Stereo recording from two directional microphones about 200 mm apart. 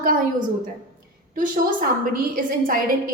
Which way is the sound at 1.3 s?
45° right (ahead or behind).